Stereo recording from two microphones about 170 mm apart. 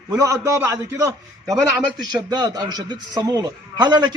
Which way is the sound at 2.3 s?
25° right (ahead or behind).